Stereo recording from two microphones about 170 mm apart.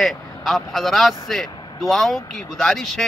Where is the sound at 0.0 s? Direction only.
Centre (ahead or behind).